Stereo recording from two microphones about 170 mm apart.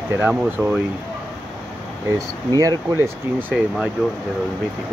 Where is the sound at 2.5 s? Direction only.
20° right (ahead or behind).